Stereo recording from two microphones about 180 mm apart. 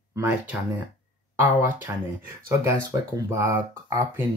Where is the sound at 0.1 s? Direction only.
10° right (ahead or behind).